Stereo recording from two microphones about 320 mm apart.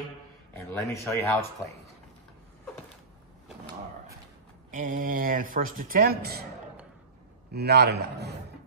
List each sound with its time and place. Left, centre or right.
0.7 s speech: centre
4.6 s speech: right
7.5 s a man's voice: right